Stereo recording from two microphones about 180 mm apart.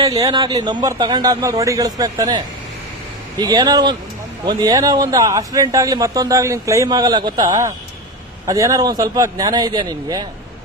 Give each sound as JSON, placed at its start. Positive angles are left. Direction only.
{"t": 0.0, "sound": "a man's voice", "side_deg": -20}
{"t": 3.4, "sound": "a man's voice", "side_deg": -20}